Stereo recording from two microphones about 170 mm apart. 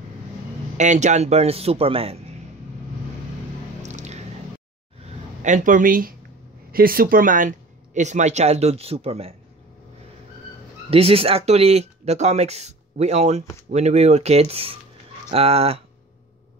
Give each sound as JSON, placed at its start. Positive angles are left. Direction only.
{"t": 0.7, "sound": "speech", "side_deg": -45}
{"t": 3.8, "sound": "squish", "side_deg": -45}
{"t": 5.4, "sound": "speech", "side_deg": -45}
{"t": 10.9, "sound": "speech", "side_deg": -35}